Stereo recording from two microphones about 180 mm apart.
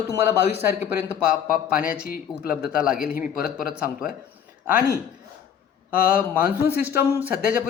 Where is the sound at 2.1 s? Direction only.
55° left (ahead or behind).